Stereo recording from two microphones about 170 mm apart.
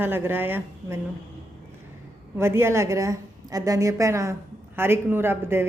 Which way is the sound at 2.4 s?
15° right (ahead or behind).